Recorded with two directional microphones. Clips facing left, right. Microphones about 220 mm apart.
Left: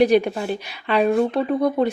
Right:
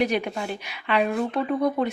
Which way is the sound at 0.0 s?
35° left (ahead or behind).